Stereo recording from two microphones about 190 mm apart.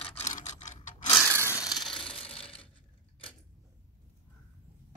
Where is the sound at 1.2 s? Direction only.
15° right (ahead or behind).